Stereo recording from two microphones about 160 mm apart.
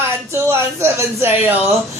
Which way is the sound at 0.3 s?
15° right (ahead or behind).